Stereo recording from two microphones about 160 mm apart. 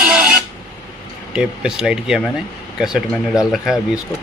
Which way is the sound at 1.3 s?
5° right (ahead or behind).